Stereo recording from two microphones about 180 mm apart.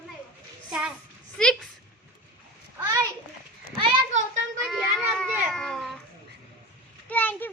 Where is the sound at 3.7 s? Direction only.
35° right (ahead or behind).